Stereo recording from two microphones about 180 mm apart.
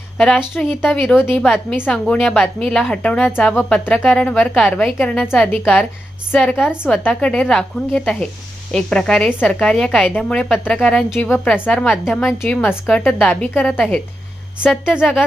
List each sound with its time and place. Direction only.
0.2 s a woman's voice: centre (ahead or behind)
6.4 s a woman's voice: centre (ahead or behind)
6.8 s a woman's voice: 5° left (ahead or behind)
14.6 s a woman's voice: 5° right (ahead or behind)